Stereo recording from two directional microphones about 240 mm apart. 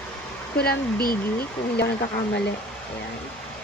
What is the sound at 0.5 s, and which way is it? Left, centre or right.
Speech, left.